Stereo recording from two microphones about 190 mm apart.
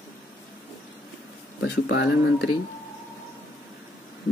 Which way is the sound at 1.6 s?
65° left (ahead or behind).